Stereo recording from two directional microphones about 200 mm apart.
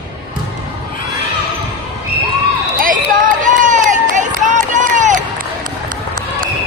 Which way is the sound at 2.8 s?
45° right (ahead or behind).